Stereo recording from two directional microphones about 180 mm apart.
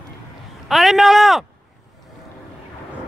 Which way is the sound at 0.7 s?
Centre (ahead or behind).